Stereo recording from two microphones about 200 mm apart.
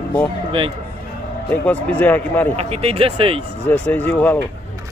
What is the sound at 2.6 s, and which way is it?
Speech, 30° right (ahead or behind).